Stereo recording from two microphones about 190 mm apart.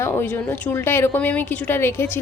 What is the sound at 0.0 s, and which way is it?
A woman's voice, 10° left (ahead or behind).